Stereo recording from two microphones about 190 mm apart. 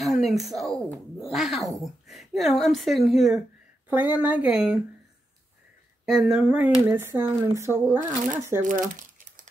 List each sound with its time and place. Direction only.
0.0 s speech: centre (ahead or behind)
6.0 s speech: 5° right (ahead or behind)
8.6 s speech: 45° right (ahead or behind)